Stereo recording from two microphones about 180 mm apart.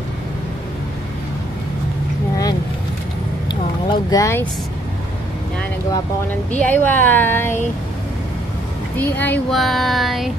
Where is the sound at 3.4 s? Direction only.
20° left (ahead or behind).